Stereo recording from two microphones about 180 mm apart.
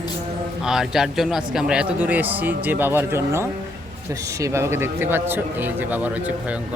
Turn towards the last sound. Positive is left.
turn(degrees=-10)  # may be behind; listen again after turning